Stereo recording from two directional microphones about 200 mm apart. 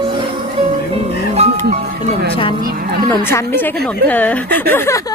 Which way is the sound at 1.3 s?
35° right (ahead or behind).